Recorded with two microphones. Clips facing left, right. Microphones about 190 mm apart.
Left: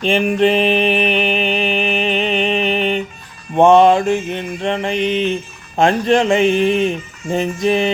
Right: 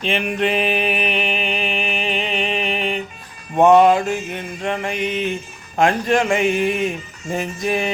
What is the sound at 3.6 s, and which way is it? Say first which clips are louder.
Mantra: left 2 dB; 25° left (ahead or behind).